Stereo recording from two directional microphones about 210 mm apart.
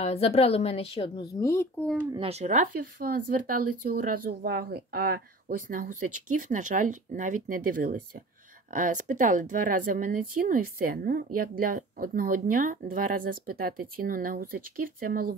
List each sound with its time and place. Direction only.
0.0 s a woman's voice: 30° left (ahead or behind); by 1.9 s 15° left (ahead or behind)
2.1 s speech: 30° right (ahead or behind)